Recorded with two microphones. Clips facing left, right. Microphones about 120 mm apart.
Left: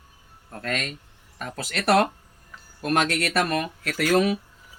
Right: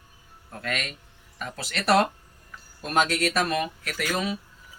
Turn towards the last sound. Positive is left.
turn(degrees=65)  # may be behind; listen again after turning